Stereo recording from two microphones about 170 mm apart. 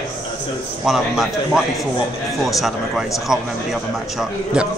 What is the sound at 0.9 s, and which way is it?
A man's voice, centre (ahead or behind).